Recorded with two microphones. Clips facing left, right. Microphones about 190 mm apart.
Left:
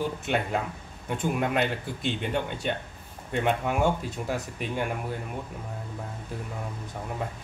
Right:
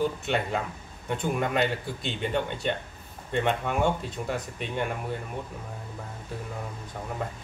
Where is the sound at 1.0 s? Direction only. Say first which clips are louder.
Even; 5° left (ahead or behind).